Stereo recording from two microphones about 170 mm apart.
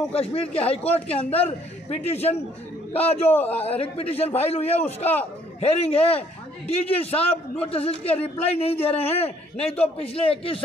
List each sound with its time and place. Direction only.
0.1 s a man's voice: 35° left (ahead or behind)